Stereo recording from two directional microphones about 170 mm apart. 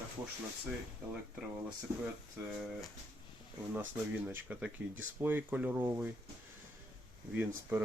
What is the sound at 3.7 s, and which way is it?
Speech, 10° right (ahead or behind).